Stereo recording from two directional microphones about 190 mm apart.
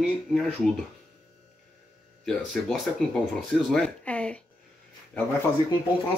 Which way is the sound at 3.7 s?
5° left (ahead or behind).